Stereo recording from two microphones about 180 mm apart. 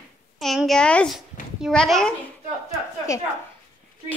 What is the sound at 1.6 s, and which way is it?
Speech, centre (ahead or behind).